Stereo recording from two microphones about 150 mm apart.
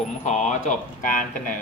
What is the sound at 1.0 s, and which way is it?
Speech, 60° left (ahead or behind).